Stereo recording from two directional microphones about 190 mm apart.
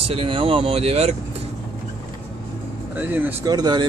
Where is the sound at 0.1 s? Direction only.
30° right (ahead or behind).